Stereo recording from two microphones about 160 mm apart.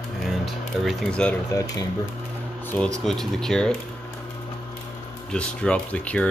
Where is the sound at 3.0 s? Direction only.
Centre (ahead or behind).